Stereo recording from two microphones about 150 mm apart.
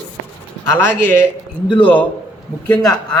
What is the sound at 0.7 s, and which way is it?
Speech, 15° left (ahead or behind).